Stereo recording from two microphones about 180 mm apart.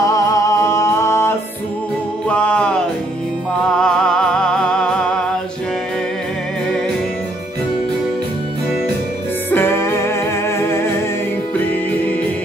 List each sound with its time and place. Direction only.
0.0 s music: 20° left (ahead or behind)
3.7 s music: 5° left (ahead or behind)
9.5 s music: 15° left (ahead or behind)